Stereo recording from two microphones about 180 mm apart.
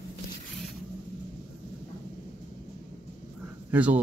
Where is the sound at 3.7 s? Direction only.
10° right (ahead or behind).